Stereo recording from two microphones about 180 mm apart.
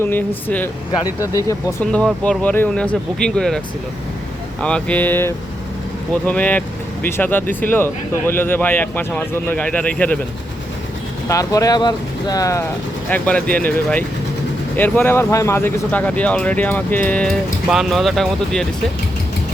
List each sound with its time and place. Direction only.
0.0 s speech: 10° left (ahead or behind)
1.8 s speech: 5° left (ahead or behind)
4.6 s speech: 5° left (ahead or behind)
11.3 s speech: 20° left (ahead or behind); by 18.6 s centre (ahead or behind)